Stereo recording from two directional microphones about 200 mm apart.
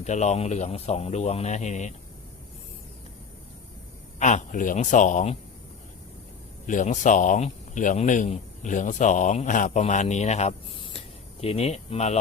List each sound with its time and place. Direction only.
0.0 s speech: 35° left (ahead or behind)
4.2 s speech: 35° left (ahead or behind)
6.7 s speech: 40° left (ahead or behind)